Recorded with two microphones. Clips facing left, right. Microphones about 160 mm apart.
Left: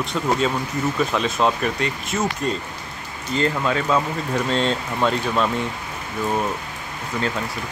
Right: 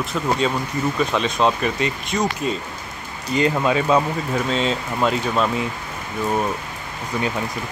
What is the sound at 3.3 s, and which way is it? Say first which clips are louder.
Speech: right 3 dB; 15° right (ahead or behind).